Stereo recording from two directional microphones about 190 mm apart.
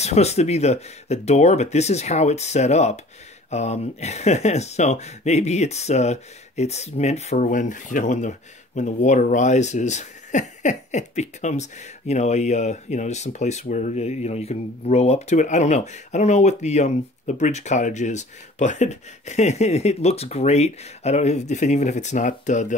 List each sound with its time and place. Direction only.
0.0 s speech: 35° left (ahead or behind)